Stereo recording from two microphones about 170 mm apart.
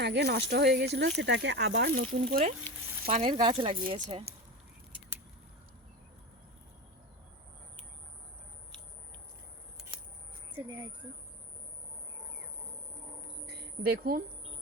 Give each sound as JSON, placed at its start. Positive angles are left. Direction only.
{"t": 0.0, "sound": "speech", "side_deg": -80}
{"t": 0.9, "sound": "speech", "side_deg": -90}
{"t": 2.0, "sound": "speech", "side_deg": -50}
{"t": 3.1, "sound": "speech", "side_deg": -35}
{"t": 13.5, "sound": "a sound", "side_deg": -65}